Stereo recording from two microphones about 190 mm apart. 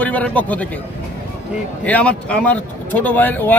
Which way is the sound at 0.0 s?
10° left (ahead or behind).